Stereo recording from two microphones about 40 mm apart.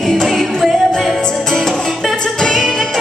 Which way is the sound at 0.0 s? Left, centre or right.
Centre.